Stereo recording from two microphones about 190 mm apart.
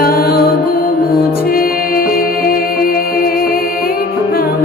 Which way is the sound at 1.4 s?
50° left (ahead or behind).